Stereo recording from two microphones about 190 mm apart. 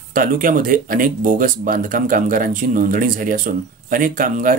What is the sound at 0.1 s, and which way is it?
Speech, 45° right (ahead or behind).